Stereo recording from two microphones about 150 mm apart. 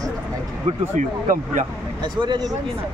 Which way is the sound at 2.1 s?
30° right (ahead or behind).